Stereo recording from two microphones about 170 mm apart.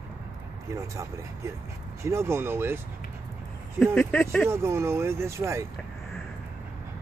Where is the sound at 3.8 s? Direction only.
10° left (ahead or behind).